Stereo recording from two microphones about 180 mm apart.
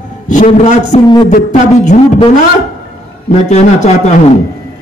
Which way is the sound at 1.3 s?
45° left (ahead or behind).